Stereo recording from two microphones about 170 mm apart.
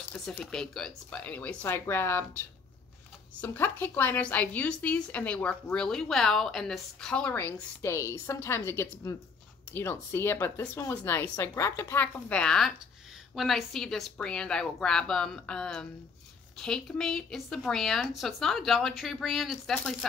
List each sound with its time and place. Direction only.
0.1 s a woman's voice: 10° left (ahead or behind)